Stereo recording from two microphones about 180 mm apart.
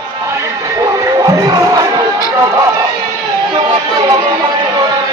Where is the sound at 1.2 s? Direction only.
20° right (ahead or behind).